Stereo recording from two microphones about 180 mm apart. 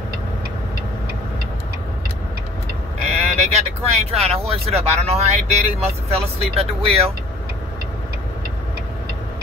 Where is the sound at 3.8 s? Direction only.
35° right (ahead or behind).